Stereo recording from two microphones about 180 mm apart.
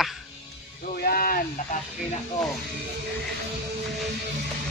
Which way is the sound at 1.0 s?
55° left (ahead or behind).